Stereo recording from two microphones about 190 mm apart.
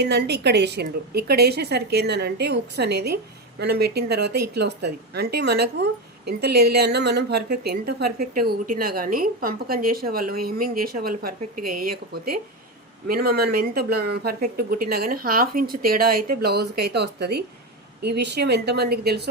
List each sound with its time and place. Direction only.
0.0 s speech: 60° right (ahead or behind)
13.1 s speech: 55° right (ahead or behind)